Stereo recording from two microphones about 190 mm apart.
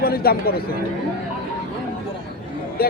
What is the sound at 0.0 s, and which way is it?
Speech, 55° left (ahead or behind).